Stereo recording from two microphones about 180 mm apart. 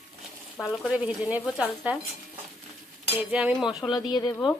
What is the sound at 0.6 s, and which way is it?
Speech, 5° right (ahead or behind).